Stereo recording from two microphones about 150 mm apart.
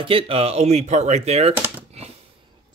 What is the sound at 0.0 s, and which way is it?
Speech, 40° right (ahead or behind).